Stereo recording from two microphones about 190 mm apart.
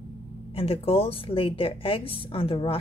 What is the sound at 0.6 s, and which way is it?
A woman's voice, 30° left (ahead or behind).